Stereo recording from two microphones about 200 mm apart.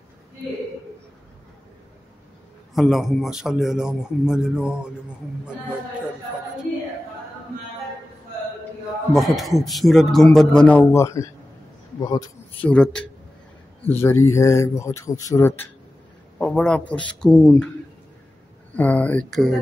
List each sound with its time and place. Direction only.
2.7 s a man's voice: centre (ahead or behind)
9.1 s a man's voice: centre (ahead or behind); by 12.3 s 20° left (ahead or behind)
12.6 s a man's voice: 5° left (ahead or behind)
18.8 s speech: 5° left (ahead or behind)